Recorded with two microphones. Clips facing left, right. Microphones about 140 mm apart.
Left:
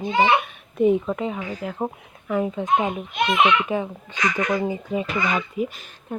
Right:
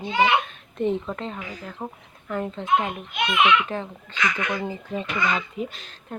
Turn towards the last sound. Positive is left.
turn(degrees=5)  # may be behind; listen again after turning